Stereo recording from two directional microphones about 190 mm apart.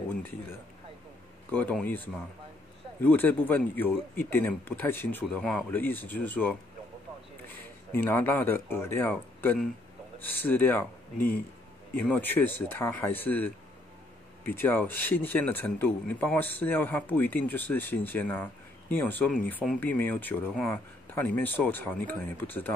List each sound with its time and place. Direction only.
1.5 s speech: 10° left (ahead or behind)
11.1 s speech: 50° left (ahead or behind)
12.0 s speech: 10° left (ahead or behind)